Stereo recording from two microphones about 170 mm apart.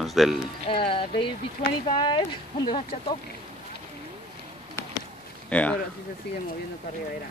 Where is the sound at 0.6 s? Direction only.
30° left (ahead or behind).